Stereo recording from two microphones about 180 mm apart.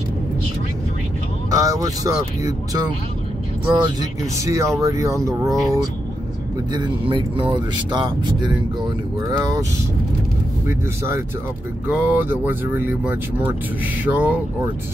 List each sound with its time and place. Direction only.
1.5 s speech: 20° right (ahead or behind)
12.0 s speech: 10° right (ahead or behind)